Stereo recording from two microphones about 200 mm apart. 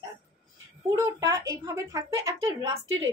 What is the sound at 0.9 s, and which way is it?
A woman's voice, 15° right (ahead or behind).